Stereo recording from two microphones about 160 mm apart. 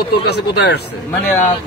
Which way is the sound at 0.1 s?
90° left.